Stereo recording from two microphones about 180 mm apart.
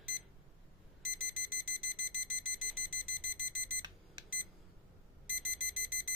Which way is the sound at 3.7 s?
25° right (ahead or behind).